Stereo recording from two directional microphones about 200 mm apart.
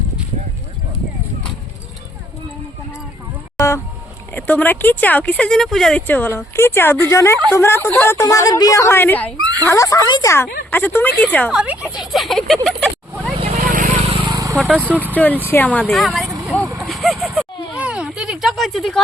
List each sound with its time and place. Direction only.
4.4 s speech: 10° left (ahead or behind)
9.4 s speech: 20° right (ahead or behind)
9.6 s speech: 15° left (ahead or behind)
11.6 s speech: 5° right (ahead or behind)
12.6 s a sound: centre (ahead or behind)
13.3 s vehicle: 30° right (ahead or behind)
13.6 s vehicle: 40° right (ahead or behind); by 14.5 s 20° right (ahead or behind)
14.5 s speech: centre (ahead or behind)
16.7 s a sound: centre (ahead or behind)